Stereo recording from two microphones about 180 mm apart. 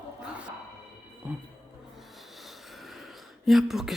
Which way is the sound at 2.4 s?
Centre (ahead or behind).